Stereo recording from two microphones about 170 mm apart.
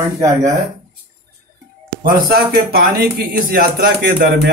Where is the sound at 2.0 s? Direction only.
60° right (ahead or behind).